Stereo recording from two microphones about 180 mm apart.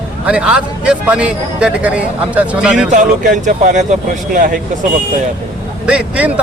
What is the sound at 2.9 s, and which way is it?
Speech, 45° right (ahead or behind).